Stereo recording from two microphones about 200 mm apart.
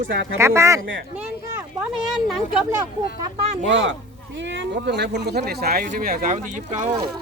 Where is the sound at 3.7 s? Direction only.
65° right (ahead or behind); by 6.9 s 35° right (ahead or behind).